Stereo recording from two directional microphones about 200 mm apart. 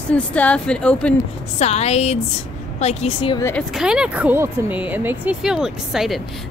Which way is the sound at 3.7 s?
5° right (ahead or behind).